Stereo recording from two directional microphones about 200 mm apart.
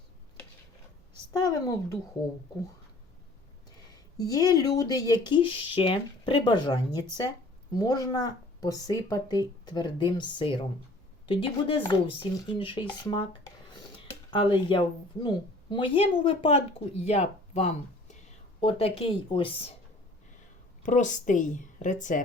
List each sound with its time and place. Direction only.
1.3 s a woman's voice: 15° left (ahead or behind)
3.8 s a sound: 20° left (ahead or behind)
4.8 s speech: 20° left (ahead or behind)
20.8 s a woman's voice: 40° left (ahead or behind)